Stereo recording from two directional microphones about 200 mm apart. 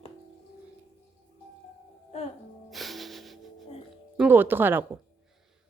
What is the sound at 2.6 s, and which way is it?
Music, centre (ahead or behind).